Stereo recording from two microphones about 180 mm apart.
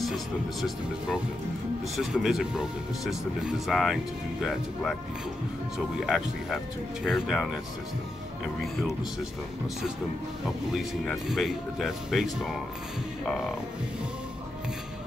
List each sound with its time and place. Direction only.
0.0 s speech: centre (ahead or behind)
5.9 s speech: centre (ahead or behind)
10.7 s speech: centre (ahead or behind)